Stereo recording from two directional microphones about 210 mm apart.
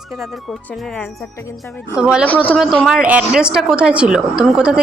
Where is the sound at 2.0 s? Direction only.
5° right (ahead or behind).